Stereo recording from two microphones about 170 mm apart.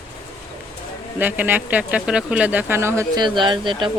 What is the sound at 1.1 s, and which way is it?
Speech, 10° right (ahead or behind).